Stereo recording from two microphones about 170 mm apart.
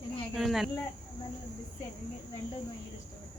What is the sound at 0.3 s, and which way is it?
Speech, centre (ahead or behind).